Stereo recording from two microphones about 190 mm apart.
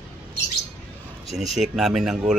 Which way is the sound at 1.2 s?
Centre (ahead or behind).